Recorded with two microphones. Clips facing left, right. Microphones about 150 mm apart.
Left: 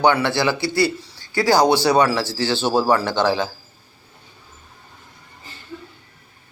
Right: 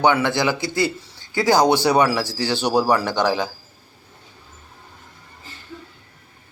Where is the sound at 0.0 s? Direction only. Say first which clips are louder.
Left 1 dB; 20° right (ahead or behind).